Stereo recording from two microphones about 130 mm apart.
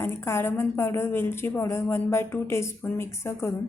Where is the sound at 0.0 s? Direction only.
20° left (ahead or behind).